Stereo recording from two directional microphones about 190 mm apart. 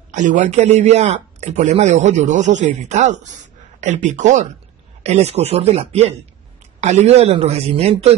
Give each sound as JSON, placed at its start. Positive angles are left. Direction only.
{"t": 0.1, "sound": "speech", "side_deg": -40}